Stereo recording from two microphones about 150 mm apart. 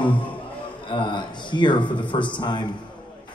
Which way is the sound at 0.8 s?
30° left (ahead or behind).